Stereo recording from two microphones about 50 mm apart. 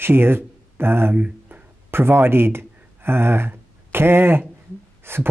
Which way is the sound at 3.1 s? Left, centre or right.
Right.